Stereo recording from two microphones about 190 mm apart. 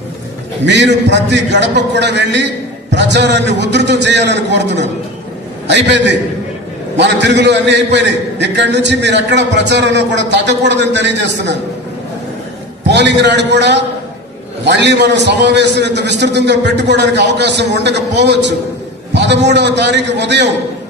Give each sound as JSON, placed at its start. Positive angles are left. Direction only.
{"t": 0.7, "sound": "a man's voice", "side_deg": -65}
{"t": 12.8, "sound": "a man's voice", "side_deg": -65}